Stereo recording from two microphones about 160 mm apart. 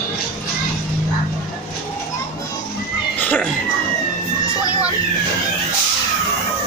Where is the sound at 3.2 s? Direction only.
10° left (ahead or behind).